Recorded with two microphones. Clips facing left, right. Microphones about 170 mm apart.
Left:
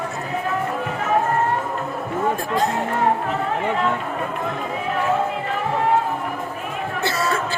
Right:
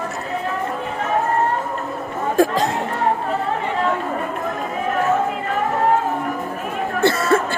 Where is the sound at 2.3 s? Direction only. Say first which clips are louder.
Right 5 dB; 85° right.